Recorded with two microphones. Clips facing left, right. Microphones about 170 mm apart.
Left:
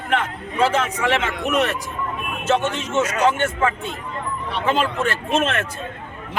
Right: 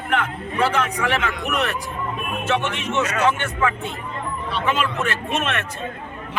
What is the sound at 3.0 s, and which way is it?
Speech, 35° left (ahead or behind).